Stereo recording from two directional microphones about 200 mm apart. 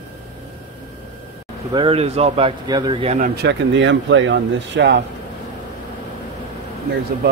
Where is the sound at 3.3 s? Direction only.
60° right (ahead or behind).